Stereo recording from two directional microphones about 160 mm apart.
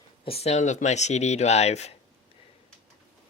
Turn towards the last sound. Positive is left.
turn(degrees=40)  # may be behind; listen again after turning